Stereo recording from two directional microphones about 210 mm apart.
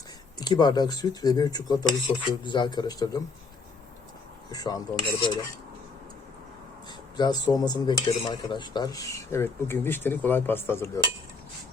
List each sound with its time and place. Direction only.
0.3 s speech: 20° left (ahead or behind)
4.5 s speech: 20° left (ahead or behind)
7.2 s speech: 20° left (ahead or behind)